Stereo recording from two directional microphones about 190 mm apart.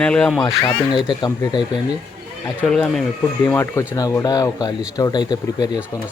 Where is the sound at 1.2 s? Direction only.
20° left (ahead or behind).